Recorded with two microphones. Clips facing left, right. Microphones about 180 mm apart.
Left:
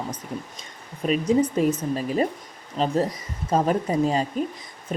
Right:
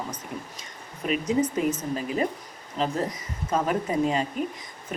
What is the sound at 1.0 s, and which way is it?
A woman's voice, 35° left (ahead or behind).